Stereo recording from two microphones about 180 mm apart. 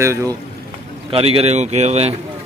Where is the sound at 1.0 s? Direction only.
30° right (ahead or behind).